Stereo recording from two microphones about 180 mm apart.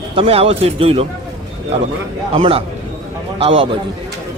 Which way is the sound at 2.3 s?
30° right (ahead or behind).